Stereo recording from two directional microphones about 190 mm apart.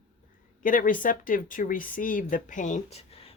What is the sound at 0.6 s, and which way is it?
Speech, 45° left (ahead or behind).